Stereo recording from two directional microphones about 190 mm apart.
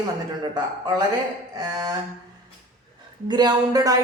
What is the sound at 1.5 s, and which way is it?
Speech, 20° right (ahead or behind).